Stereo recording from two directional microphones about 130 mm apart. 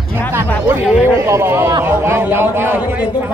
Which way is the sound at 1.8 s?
20° right (ahead or behind).